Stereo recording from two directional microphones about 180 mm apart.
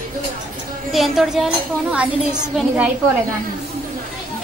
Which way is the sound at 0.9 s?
Centre (ahead or behind).